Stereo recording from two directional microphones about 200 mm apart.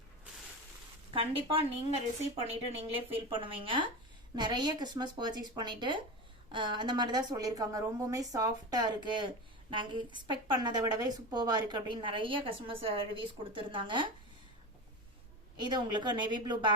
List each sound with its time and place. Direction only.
1.1 s a woman's voice: 25° right (ahead or behind)
15.6 s a woman's voice: 20° right (ahead or behind)